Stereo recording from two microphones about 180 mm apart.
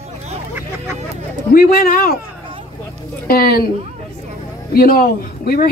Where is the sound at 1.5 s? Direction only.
55° left (ahead or behind).